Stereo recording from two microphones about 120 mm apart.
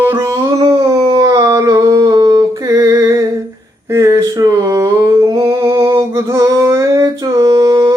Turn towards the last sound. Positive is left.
turn(degrees=-30)  # may be behind; listen again after turning